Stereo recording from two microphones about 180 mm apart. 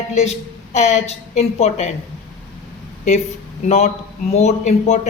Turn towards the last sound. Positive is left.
turn(degrees=40)  # may be behind; listen again after turning